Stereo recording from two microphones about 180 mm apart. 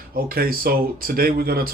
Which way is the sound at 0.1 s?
55° right (ahead or behind).